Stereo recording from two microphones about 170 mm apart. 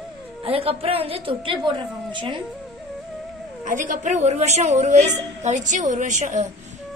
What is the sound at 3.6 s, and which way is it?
A woman's voice, 50° right (ahead or behind).